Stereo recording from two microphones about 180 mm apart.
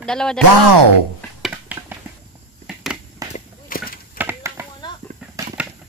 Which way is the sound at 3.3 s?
50° left (ahead or behind).